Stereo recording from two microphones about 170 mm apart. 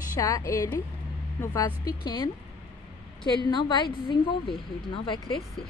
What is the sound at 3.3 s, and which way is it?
A woman's voice, 25° left (ahead or behind).